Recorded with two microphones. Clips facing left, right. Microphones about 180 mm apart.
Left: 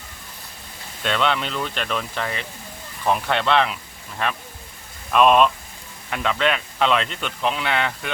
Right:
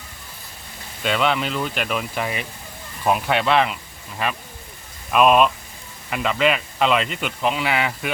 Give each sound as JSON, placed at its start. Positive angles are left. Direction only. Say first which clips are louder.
{"t": 1.0, "sound": "speech", "louder": "right 1 dB", "side_deg": -5}